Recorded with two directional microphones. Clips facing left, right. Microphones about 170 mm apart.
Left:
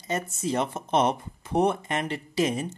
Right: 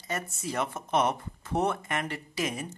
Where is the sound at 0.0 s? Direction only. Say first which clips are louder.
Left 5 dB; 20° left (ahead or behind).